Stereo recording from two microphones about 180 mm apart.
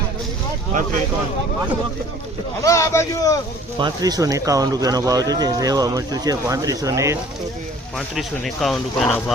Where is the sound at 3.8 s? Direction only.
20° right (ahead or behind).